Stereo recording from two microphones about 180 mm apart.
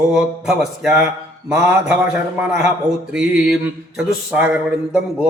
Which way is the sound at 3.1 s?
5° right (ahead or behind).